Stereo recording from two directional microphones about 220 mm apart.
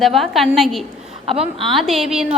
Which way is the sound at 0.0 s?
Centre (ahead or behind).